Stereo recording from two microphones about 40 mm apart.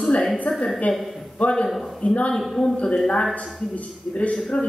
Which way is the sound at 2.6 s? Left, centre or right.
Left.